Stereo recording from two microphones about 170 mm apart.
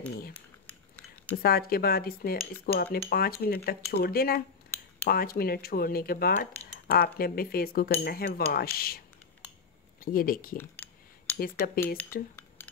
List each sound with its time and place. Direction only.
1.3 s speech: 65° left (ahead or behind)
6.3 s speech: 50° left (ahead or behind)
10.6 s a sound: 10° left (ahead or behind)
11.3 s speech: 60° left (ahead or behind)